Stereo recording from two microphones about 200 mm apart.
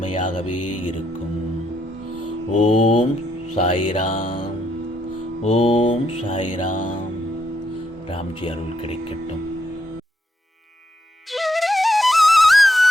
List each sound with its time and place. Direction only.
2.5 s music: 30° left (ahead or behind)
3.5 s speech: 25° left (ahead or behind)
4.0 s music: 40° left (ahead or behind)
4.3 s music: 25° left (ahead or behind); by 7.0 s 40° left (ahead or behind)
8.1 s speech: 30° left (ahead or behind)
11.3 s flute: centre (ahead or behind)